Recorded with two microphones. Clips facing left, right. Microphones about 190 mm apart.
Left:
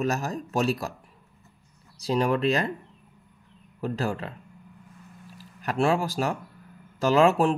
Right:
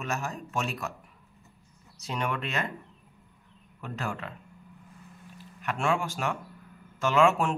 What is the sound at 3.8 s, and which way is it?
Speech, 35° left (ahead or behind).